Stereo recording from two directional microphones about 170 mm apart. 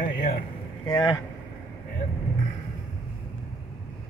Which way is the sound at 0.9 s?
25° left (ahead or behind).